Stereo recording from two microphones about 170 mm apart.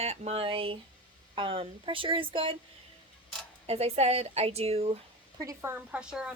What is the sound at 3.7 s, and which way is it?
A woman's voice, 35° right (ahead or behind).